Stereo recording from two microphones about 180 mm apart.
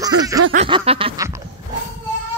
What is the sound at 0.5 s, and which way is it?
Snicker, 35° right (ahead or behind).